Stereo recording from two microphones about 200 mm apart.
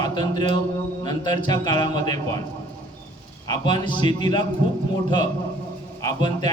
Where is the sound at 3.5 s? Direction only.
20° left (ahead or behind).